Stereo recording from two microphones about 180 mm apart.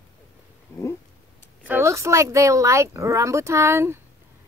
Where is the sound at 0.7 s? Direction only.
15° left (ahead or behind).